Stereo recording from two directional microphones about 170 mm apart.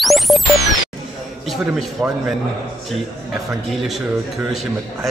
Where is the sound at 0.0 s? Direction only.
Centre (ahead or behind).